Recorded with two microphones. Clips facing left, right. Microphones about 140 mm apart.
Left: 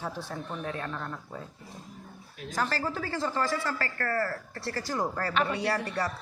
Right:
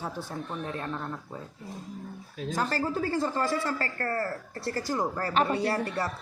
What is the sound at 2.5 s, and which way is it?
Speech, 25° right (ahead or behind).